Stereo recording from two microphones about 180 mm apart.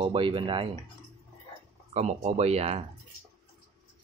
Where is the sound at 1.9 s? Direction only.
40° right (ahead or behind).